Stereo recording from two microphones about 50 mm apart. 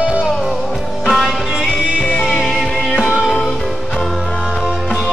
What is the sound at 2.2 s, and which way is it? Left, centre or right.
Music, centre.